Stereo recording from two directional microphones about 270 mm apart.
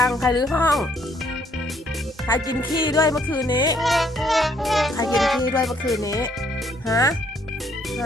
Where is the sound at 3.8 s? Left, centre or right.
Centre.